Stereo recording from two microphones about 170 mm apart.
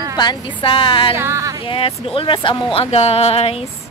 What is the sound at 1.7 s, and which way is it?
Speech, 30° left (ahead or behind).